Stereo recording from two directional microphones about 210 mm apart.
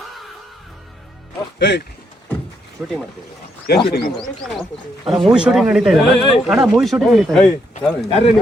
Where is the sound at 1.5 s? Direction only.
55° left (ahead or behind).